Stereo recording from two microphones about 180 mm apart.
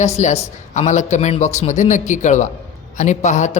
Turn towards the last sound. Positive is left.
turn(degrees=40)  # may be behind; listen again after turning